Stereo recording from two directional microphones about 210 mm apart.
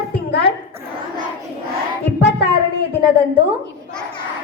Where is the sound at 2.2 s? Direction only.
55° left (ahead or behind).